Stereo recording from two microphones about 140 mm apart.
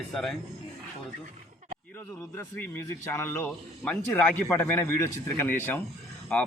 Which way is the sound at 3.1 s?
15° left (ahead or behind).